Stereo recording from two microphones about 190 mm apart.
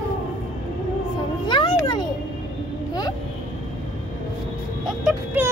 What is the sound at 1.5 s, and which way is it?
Children playing, 20° left (ahead or behind).